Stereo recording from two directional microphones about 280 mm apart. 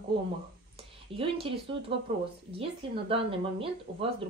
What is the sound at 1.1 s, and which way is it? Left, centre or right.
Speech, centre.